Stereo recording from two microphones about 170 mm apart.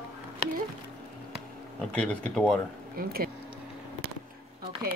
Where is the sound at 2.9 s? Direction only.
60° right (ahead or behind).